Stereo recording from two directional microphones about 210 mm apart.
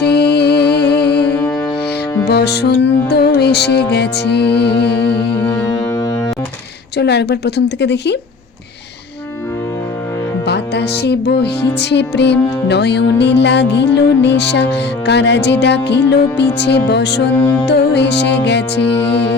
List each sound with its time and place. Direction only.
0.0 s music: 50° left (ahead or behind)
2.2 s music: 50° left (ahead or behind)
5.4 s music: 10° left (ahead or behind)
6.9 s music: 55° left (ahead or behind)
10.4 s music: 55° left (ahead or behind)